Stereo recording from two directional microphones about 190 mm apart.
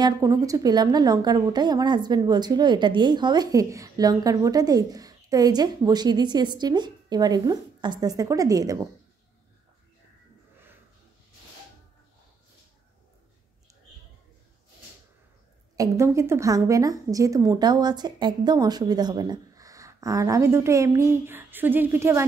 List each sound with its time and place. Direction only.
0.0 s a woman's voice: 20° right (ahead or behind)
15.7 s a woman's voice: 15° right (ahead or behind)